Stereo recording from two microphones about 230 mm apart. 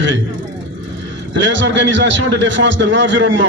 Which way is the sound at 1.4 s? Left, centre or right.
Right.